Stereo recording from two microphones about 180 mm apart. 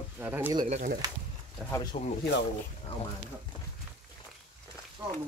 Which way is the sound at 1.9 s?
35° left (ahead or behind).